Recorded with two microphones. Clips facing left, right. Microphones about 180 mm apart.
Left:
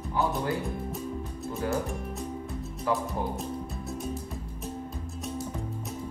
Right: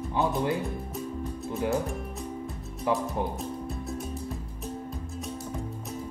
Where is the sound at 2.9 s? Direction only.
20° right (ahead or behind).